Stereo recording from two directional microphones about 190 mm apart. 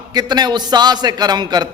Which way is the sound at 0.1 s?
20° right (ahead or behind).